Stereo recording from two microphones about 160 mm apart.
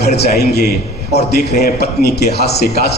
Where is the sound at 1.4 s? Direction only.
70° left (ahead or behind); by 2.9 s 85° left.